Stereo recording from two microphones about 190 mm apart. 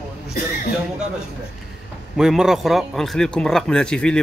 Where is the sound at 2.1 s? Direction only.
5° right (ahead or behind).